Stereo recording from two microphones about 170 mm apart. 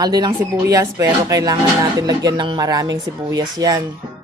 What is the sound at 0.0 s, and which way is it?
Speech, 25° right (ahead or behind).